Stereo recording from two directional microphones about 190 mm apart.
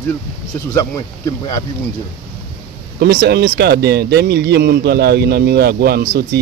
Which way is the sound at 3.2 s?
70° right (ahead or behind).